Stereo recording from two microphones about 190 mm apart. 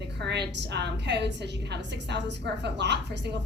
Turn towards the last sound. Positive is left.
turn(degrees=-65)  # may be behind; listen again after turning